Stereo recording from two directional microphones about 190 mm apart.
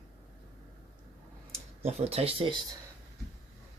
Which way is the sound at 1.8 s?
35° right (ahead or behind).